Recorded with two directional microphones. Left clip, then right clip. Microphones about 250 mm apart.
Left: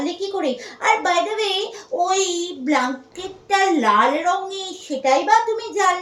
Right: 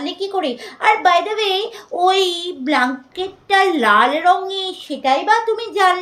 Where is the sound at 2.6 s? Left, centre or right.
Centre.